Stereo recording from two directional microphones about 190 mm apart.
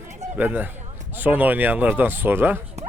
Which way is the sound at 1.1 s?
10° right (ahead or behind).